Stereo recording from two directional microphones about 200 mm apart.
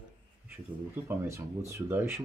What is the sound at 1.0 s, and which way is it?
Speech, 15° right (ahead or behind).